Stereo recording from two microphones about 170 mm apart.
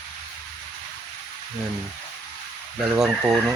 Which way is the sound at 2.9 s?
5° right (ahead or behind).